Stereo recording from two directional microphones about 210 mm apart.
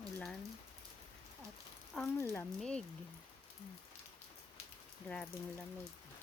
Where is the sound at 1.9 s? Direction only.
5° left (ahead or behind).